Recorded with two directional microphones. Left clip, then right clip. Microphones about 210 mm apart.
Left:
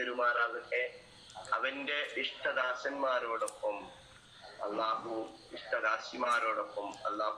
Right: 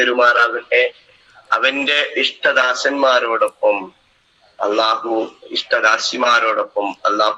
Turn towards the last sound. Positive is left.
turn(degrees=-50)  # may be behind; listen again after turning